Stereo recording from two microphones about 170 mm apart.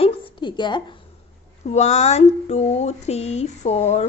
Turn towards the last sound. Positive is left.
turn(degrees=40)  # may be behind; listen again after turning